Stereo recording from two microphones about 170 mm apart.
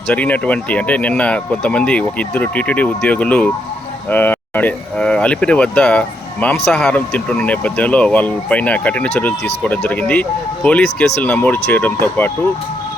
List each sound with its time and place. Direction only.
0.1 s speech: 10° left (ahead or behind)